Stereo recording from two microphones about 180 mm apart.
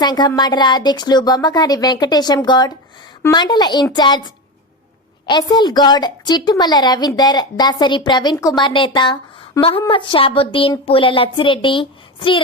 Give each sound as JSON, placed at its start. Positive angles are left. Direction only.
{"t": 0.0, "sound": "a woman's voice", "side_deg": 25}
{"t": 5.2, "sound": "a woman's voice", "side_deg": 20}